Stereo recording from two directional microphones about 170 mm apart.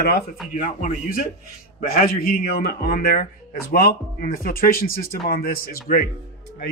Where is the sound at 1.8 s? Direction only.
60° left (ahead or behind).